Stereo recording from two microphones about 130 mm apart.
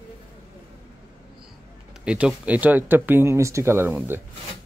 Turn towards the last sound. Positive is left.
turn(degrees=-15)  # may be behind; listen again after turning